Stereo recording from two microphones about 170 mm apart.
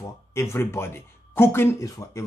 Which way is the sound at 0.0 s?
15° left (ahead or behind).